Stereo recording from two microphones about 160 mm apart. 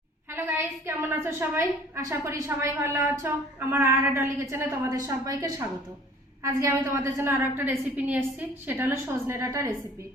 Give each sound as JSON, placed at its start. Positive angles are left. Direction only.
{"t": 0.3, "sound": "a woman's voice", "side_deg": -15}